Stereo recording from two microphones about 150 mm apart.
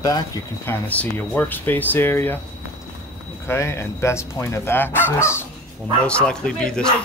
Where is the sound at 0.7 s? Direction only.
10° left (ahead or behind).